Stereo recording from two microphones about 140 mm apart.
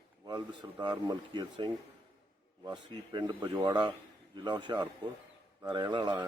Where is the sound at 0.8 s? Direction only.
30° right (ahead or behind).